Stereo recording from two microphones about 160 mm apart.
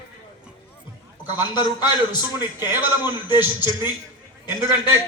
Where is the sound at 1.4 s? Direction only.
25° left (ahead or behind).